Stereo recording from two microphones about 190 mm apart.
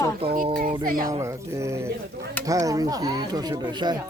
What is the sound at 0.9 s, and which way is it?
Speech, 45° right (ahead or behind).